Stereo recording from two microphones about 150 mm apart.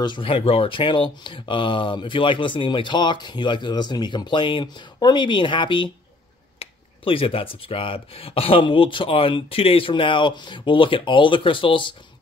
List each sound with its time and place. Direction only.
0.0 s speech: 35° left (ahead or behind)